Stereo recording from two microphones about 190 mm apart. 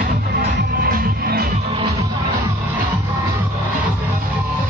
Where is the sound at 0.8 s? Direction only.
50° right (ahead or behind).